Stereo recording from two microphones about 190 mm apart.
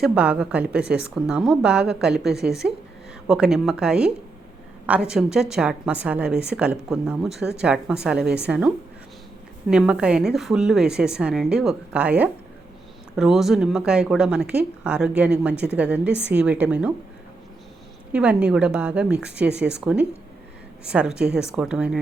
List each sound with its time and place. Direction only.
0.0 s speech: 5° right (ahead or behind)
2.3 s a woman's voice: 60° right (ahead or behind)
3.2 s a woman's voice: 5° right (ahead or behind)
18.1 s speech: 5° right (ahead or behind)
20.8 s speech: 5° right (ahead or behind)